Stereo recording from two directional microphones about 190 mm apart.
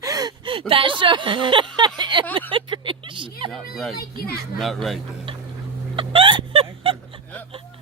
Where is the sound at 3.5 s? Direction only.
Centre (ahead or behind).